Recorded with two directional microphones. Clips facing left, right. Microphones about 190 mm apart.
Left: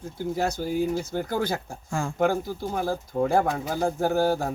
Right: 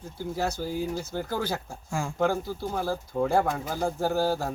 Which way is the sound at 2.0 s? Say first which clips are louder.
Left 2 dB; 10° right (ahead or behind).